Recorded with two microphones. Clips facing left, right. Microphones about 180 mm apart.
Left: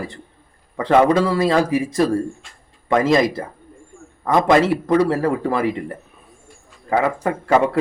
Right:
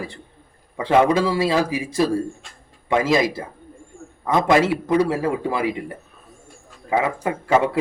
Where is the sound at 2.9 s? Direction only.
5° right (ahead or behind).